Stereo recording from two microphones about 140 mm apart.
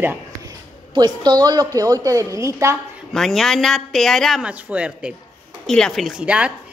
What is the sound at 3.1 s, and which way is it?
A woman's voice, centre (ahead or behind).